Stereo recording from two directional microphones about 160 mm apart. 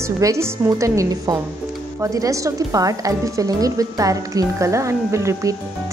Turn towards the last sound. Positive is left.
turn(degrees=-20)  # may be behind; listen again after turning